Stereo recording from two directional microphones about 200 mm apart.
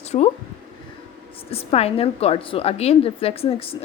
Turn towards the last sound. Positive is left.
turn(degrees=30)  # may be behind; listen again after turning